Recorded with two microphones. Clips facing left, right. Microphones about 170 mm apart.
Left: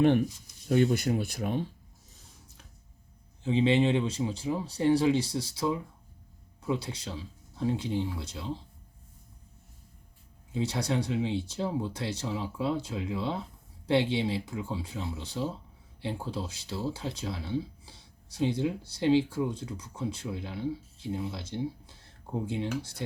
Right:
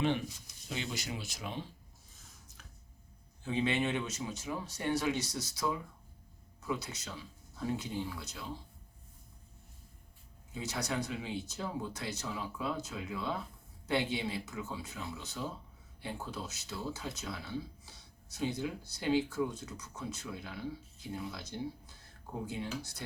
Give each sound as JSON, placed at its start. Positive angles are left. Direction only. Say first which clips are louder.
{"t": 0.0, "sound": "speech", "louder": "left 9 dB", "side_deg": 55}
{"t": 3.4, "sound": "speech", "louder": "left 8 dB", "side_deg": 25}
{"t": 10.5, "sound": "speech", "louder": "left 7 dB", "side_deg": 30}